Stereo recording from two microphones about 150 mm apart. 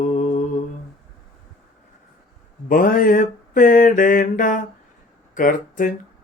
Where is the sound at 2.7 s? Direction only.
65° left (ahead or behind).